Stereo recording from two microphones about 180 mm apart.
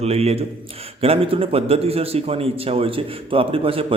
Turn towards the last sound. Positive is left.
turn(degrees=-30)  # may be behind; listen again after turning